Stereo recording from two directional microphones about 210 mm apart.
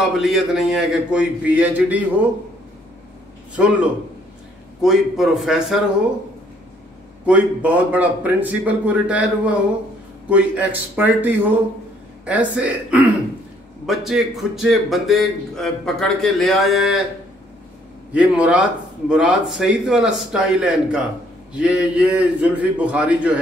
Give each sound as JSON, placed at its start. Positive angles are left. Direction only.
{"t": 0.1, "sound": "a man's voice", "side_deg": 0}
{"t": 3.5, "sound": "a man's voice", "side_deg": -5}
{"t": 7.2, "sound": "a man's voice", "side_deg": -5}
{"t": 18.1, "sound": "a man's voice", "side_deg": -5}